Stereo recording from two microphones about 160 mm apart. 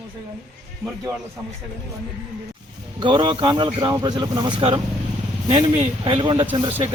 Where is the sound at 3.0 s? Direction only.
30° right (ahead or behind).